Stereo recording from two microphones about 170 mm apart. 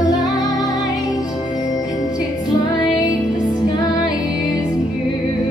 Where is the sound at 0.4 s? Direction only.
20° left (ahead or behind).